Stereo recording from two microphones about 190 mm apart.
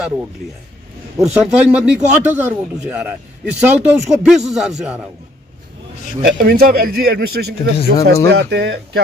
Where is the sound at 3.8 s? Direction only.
5° right (ahead or behind).